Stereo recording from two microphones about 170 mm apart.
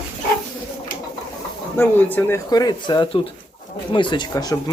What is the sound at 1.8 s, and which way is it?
Speech, 10° left (ahead or behind).